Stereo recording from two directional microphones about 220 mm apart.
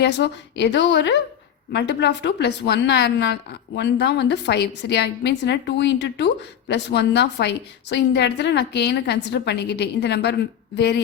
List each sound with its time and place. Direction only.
0.0 s a woman's voice: 50° left (ahead or behind)